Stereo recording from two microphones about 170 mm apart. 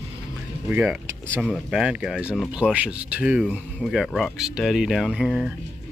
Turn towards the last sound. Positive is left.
turn(degrees=-5)  # may be behind; listen again after turning